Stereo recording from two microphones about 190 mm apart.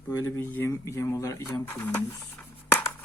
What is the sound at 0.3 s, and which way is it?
Speech, 10° left (ahead or behind).